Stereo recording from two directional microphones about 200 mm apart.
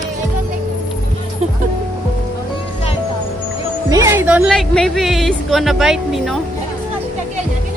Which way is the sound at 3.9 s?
15° right (ahead or behind).